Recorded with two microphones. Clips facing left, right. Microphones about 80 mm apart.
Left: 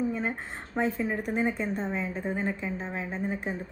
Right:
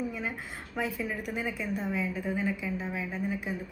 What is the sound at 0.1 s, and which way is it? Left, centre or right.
A woman's voice, left.